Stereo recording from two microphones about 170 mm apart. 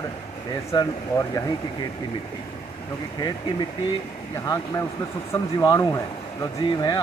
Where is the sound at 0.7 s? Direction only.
30° left (ahead or behind).